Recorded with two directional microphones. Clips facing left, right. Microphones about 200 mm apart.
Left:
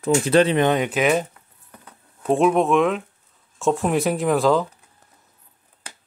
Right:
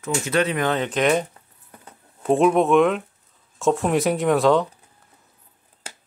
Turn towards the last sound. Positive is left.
turn(degrees=0)  # may be behind; listen again after turning